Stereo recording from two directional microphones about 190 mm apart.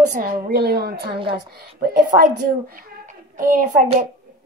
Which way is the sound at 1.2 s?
25° right (ahead or behind).